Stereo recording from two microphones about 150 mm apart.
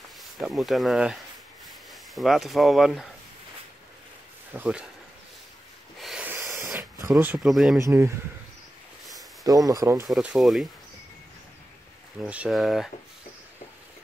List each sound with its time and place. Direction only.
0.2 s speech: centre (ahead or behind)
4.6 s speech: 5° right (ahead or behind)
5.9 s a sound: 5° right (ahead or behind)
7.3 s speech: centre (ahead or behind)
7.8 s speech: 15° right (ahead or behind)
9.4 s speech: 25° right (ahead or behind)
10.0 s speech: centre (ahead or behind)
12.2 s speech: 5° right (ahead or behind)